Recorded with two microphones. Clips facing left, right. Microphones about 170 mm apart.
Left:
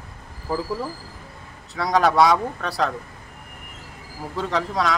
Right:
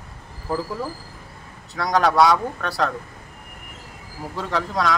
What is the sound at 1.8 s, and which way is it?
Speech, centre (ahead or behind).